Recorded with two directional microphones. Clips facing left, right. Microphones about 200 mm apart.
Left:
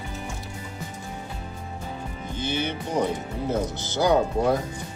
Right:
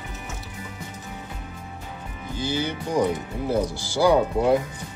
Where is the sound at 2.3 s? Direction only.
20° left (ahead or behind).